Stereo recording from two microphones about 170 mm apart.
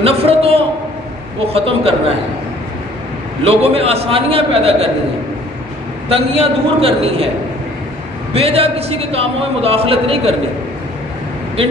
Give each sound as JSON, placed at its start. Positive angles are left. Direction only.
{"t": 0.0, "sound": "a man's voice", "side_deg": -35}
{"t": 3.4, "sound": "a man's voice", "side_deg": -35}
{"t": 6.0, "sound": "a man's voice", "side_deg": -35}
{"t": 8.3, "sound": "a man's voice", "side_deg": -35}